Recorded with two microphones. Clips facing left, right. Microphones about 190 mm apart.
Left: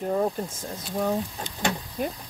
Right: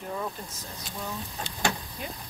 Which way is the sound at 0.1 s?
50° left (ahead or behind).